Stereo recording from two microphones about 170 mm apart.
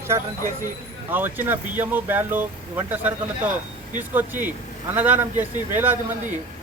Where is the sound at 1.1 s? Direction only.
10° right (ahead or behind).